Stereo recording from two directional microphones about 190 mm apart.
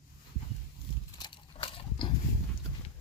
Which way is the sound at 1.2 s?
25° left (ahead or behind).